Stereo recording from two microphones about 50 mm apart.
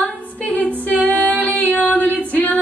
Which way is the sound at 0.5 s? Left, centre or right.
Left.